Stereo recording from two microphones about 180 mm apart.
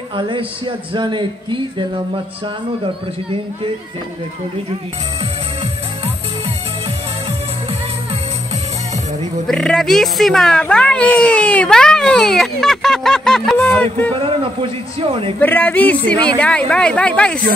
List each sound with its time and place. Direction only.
0.1 s a sound: 30° right (ahead or behind)
9.5 s speech: 5° left (ahead or behind)
14.1 s a man's voice: 30° right (ahead or behind)
15.3 s a woman's voice: 10° left (ahead or behind)